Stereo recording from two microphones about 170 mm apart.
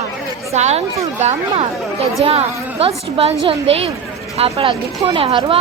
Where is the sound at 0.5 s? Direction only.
40° right (ahead or behind).